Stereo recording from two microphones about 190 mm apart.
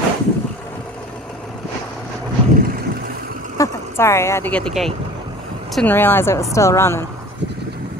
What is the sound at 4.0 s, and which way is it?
Speech, 15° left (ahead or behind).